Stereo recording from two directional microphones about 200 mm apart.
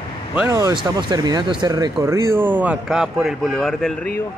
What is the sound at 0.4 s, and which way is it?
Speech, 15° right (ahead or behind).